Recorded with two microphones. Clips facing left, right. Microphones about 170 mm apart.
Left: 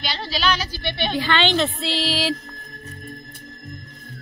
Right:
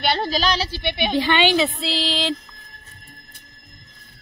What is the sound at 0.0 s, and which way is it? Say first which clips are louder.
A woman's voice: right 4 dB; 55° right (ahead or behind).